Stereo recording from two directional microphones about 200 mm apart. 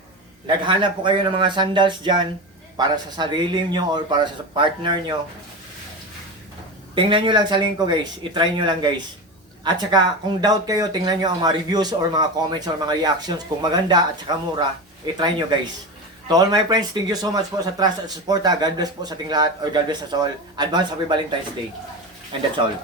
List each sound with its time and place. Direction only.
0.4 s speech: 25° right (ahead or behind)
6.9 s speech: 25° right (ahead or behind)